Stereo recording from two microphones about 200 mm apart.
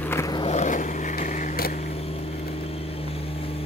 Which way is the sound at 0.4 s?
35° left (ahead or behind).